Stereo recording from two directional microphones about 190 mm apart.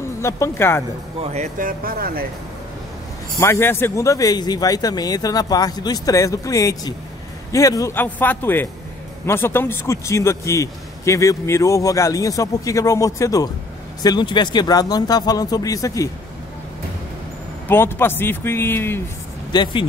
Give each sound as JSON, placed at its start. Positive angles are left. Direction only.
{"t": 0.2, "sound": "a man's voice", "side_deg": 15}
{"t": 1.2, "sound": "speech", "side_deg": -35}
{"t": 3.3, "sound": "a man's voice", "side_deg": 15}
{"t": 17.6, "sound": "a man's voice", "side_deg": 10}
{"t": 19.5, "sound": "a man's voice", "side_deg": 25}